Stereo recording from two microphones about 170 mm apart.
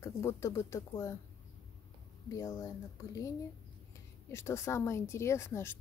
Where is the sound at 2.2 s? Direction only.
20° left (ahead or behind).